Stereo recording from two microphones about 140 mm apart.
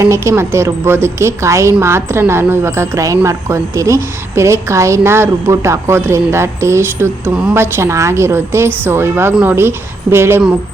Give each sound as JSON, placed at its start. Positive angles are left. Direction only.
{"t": 0.0, "sound": "a woman's voice", "side_deg": -20}